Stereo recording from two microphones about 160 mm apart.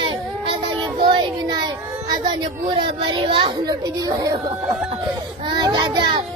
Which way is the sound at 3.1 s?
35° right (ahead or behind).